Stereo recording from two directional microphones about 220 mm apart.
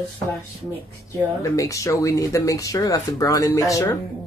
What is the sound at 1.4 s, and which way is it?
Speech, 15° left (ahead or behind).